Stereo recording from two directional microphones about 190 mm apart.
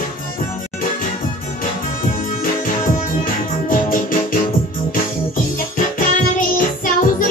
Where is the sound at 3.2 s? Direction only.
45° left (ahead or behind).